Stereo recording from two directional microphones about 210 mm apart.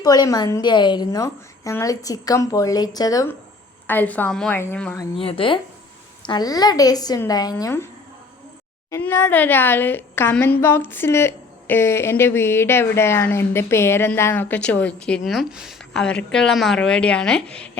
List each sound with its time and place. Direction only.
0.0 s a woman's voice: 20° left (ahead or behind)
5.1 s a woman's voice: 25° left (ahead or behind)
8.9 s a woman's voice: 10° left (ahead or behind)